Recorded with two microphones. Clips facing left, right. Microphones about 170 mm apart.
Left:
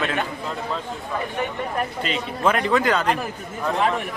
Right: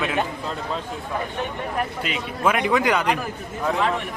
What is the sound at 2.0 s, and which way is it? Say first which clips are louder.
Speech: left 2 dB; 10° right (ahead or behind).